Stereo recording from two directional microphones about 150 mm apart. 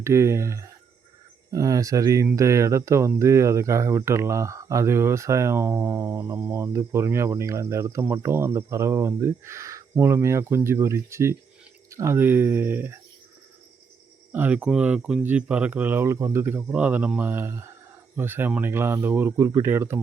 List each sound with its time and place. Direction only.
0.0 s speech: 20° right (ahead or behind)
14.3 s speech: 10° right (ahead or behind)